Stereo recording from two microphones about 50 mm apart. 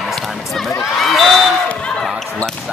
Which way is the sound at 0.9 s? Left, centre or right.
Centre.